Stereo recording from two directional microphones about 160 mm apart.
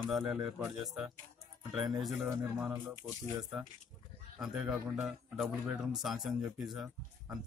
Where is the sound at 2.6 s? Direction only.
15° right (ahead or behind).